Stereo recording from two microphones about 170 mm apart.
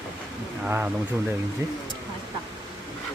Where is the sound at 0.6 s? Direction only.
10° right (ahead or behind).